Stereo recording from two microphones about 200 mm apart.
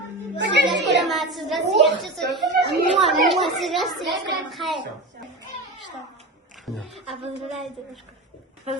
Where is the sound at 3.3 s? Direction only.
Centre (ahead or behind).